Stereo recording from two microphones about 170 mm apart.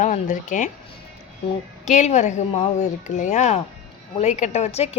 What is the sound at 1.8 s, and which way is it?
A woman's voice, 45° left (ahead or behind).